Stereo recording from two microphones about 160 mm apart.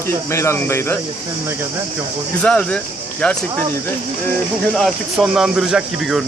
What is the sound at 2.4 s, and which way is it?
Speech, 5° left (ahead or behind).